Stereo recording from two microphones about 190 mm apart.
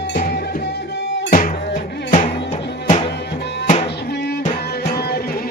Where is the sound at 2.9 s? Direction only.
30° left (ahead or behind).